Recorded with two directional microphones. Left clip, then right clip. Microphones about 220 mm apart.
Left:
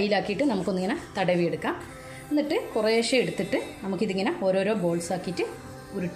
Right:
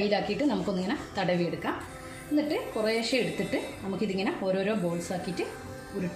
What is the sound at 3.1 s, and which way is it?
A woman's voice, 45° left (ahead or behind).